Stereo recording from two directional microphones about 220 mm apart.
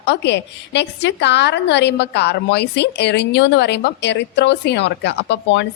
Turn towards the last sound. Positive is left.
turn(degrees=50)  # may be behind; listen again after turning